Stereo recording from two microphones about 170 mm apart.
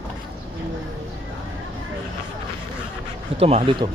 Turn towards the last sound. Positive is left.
turn(degrees=-35)  # may be behind; listen again after turning